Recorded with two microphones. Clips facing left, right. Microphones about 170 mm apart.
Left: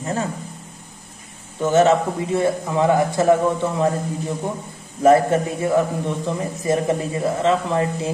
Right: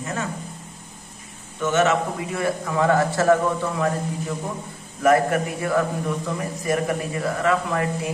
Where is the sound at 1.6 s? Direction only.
30° left (ahead or behind).